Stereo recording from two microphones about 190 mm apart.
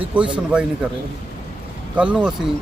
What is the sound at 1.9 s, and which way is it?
Speech, 5° right (ahead or behind).